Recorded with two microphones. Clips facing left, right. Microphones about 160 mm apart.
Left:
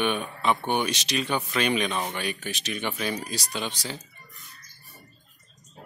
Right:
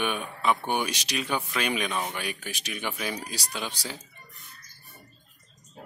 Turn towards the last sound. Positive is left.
turn(degrees=-10)  # may be behind; listen again after turning